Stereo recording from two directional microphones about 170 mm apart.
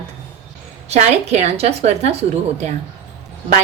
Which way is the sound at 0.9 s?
40° right (ahead or behind).